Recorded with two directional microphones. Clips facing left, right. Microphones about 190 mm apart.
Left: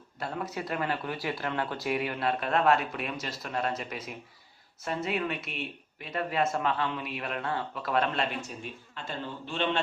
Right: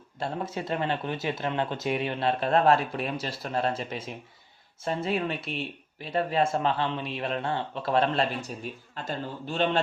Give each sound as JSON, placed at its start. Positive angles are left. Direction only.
{"t": 0.2, "sound": "speech", "side_deg": -25}